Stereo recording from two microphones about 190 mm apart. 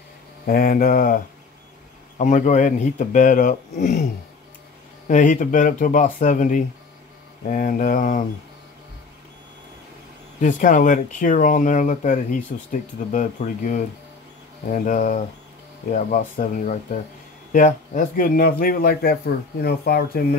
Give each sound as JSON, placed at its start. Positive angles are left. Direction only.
{"t": 0.5, "sound": "speech", "side_deg": 50}
{"t": 10.4, "sound": "speech", "side_deg": 45}